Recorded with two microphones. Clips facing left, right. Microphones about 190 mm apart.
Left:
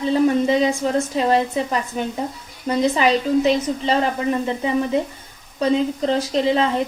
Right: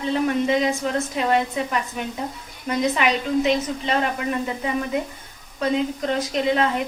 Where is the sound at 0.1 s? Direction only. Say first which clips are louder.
Left 4 dB; 30° left (ahead or behind).